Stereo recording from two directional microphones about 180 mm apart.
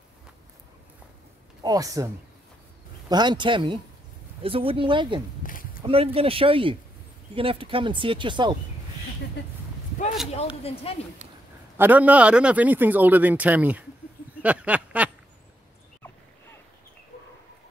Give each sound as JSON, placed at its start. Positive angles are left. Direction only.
{"t": 1.6, "sound": "speech", "side_deg": -20}
{"t": 3.1, "sound": "speech", "side_deg": -25}
{"t": 5.4, "sound": "a sound", "side_deg": 50}
{"t": 5.9, "sound": "speech", "side_deg": -30}
{"t": 10.6, "sound": "speech", "side_deg": 35}
{"t": 11.7, "sound": "a man's voice", "side_deg": -10}
{"t": 14.4, "sound": "a sound", "side_deg": -5}